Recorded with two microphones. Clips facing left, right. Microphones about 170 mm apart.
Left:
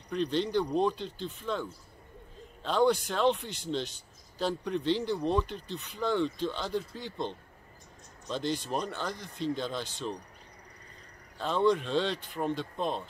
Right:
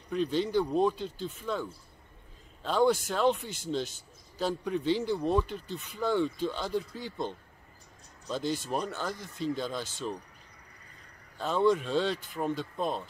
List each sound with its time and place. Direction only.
0.1 s a man's voice: 5° right (ahead or behind)
3.4 s speech: 45° right (ahead or behind)
4.4 s a man's voice: 5° right (ahead or behind)
11.3 s a man's voice: 5° right (ahead or behind)